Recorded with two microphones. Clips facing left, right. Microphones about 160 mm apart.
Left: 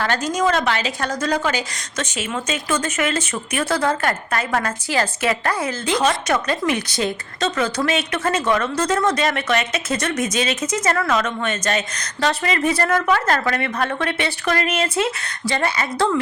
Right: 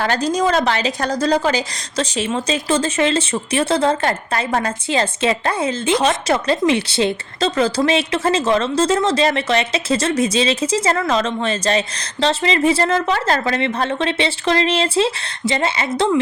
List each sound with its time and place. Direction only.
0.0 s a woman's voice: 35° right (ahead or behind)